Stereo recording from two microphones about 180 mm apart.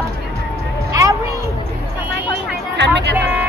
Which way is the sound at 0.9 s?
15° right (ahead or behind).